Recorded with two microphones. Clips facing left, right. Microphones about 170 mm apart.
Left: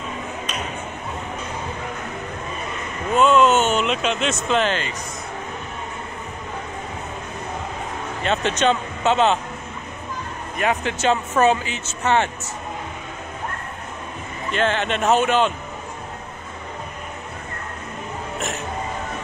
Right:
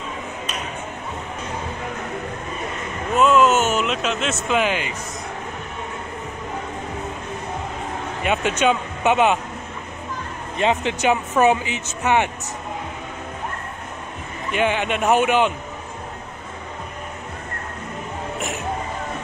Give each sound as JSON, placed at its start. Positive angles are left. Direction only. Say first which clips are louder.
{"t": 3.2, "sound": "speech", "louder": "even", "side_deg": -5}
{"t": 8.2, "sound": "speech", "louder": "even", "side_deg": -10}
{"t": 10.6, "sound": "speech", "louder": "right 2 dB", "side_deg": -20}
{"t": 14.5, "sound": "speech", "louder": "right 1 dB", "side_deg": -10}